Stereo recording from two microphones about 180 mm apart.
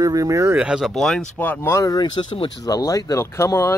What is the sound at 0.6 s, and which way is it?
Speech, 5° right (ahead or behind).